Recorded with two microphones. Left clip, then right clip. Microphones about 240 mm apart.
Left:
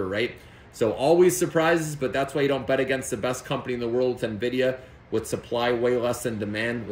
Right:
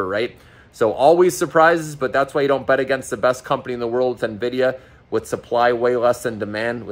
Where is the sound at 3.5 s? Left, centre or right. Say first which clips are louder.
Right 6 dB; right.